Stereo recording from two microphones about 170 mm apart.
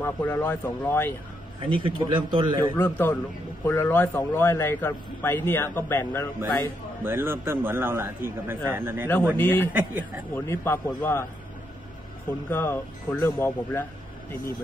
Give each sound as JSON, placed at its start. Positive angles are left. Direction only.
{"t": 0.0, "sound": "a man's voice", "side_deg": 10}
{"t": 1.6, "sound": "a man's voice", "side_deg": -30}
{"t": 2.8, "sound": "a man's voice", "side_deg": 10}
{"t": 7.0, "sound": "a man's voice", "side_deg": -15}
{"t": 9.4, "sound": "a man's voice", "side_deg": 10}
{"t": 9.7, "sound": "a man's voice", "side_deg": -10}
{"t": 10.3, "sound": "a man's voice", "side_deg": 15}
{"t": 12.4, "sound": "a man's voice", "side_deg": 15}